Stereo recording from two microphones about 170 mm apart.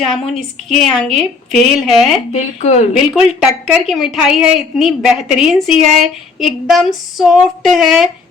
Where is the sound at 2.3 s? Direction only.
40° left (ahead or behind).